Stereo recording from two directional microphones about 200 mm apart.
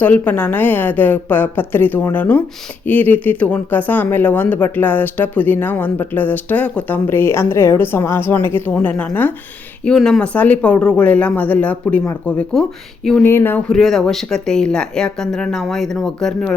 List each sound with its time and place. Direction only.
0.0 s speech: 10° left (ahead or behind)